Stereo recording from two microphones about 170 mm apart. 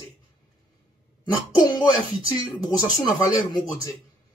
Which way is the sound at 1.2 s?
25° left (ahead or behind).